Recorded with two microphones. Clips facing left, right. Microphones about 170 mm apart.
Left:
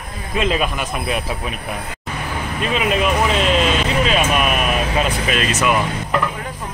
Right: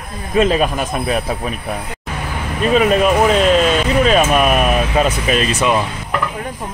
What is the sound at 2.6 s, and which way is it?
Speech, 40° right (ahead or behind).